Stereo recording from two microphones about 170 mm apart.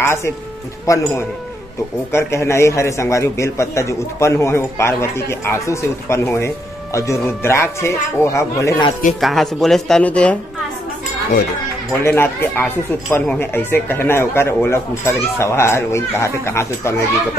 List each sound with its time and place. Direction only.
0.0 s a man's voice: 15° left (ahead or behind)
9.2 s speech: centre (ahead or behind)
12.0 s a man's voice: 15° left (ahead or behind)